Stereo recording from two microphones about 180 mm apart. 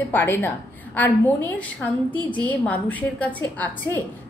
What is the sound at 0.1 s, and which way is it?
A woman's voice, 10° left (ahead or behind).